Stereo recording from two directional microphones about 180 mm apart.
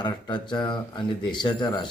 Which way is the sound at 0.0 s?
25° left (ahead or behind).